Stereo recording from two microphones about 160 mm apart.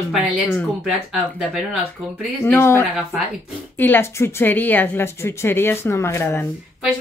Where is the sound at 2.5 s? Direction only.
15° left (ahead or behind).